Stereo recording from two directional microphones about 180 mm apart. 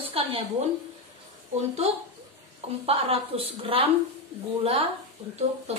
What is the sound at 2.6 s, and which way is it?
A woman's voice, 35° right (ahead or behind).